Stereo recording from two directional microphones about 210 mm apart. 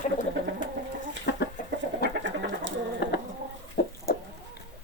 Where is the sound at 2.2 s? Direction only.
60° right (ahead or behind).